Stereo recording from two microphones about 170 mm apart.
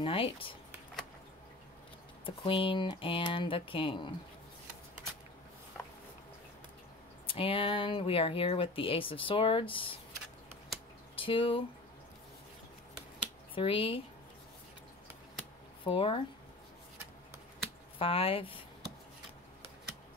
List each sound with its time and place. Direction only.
0.0 s speech: 30° left (ahead or behind)
2.2 s speech: 30° left (ahead or behind)
7.2 s speech: 30° left (ahead or behind)
11.1 s speech: 30° left (ahead or behind)
13.6 s speech: 30° left (ahead or behind)
15.8 s speech: 30° left (ahead or behind)
17.9 s speech: 30° left (ahead or behind)